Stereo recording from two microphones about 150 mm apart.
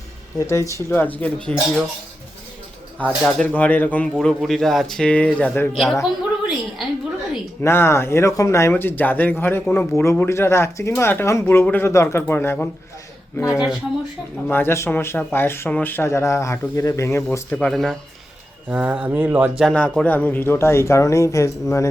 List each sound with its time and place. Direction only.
0.3 s a man's voice: 20° left (ahead or behind)
3.0 s a man's voice: 5° left (ahead or behind)
5.7 s speech: centre (ahead or behind)
7.6 s a man's voice: 15° left (ahead or behind)
13.5 s speech: 5° right (ahead or behind)
14.4 s a man's voice: 15° left (ahead or behind)
17.7 s speech: centre (ahead or behind)
19.6 s a man's voice: 5° left (ahead or behind)